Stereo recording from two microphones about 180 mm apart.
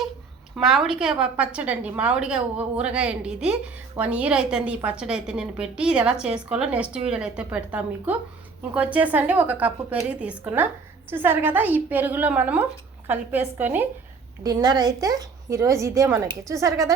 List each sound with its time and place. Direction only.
0.5 s a woman's voice: centre (ahead or behind)
14.4 s speech: 25° right (ahead or behind)